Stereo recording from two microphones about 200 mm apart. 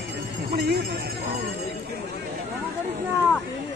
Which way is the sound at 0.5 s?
55° right (ahead or behind).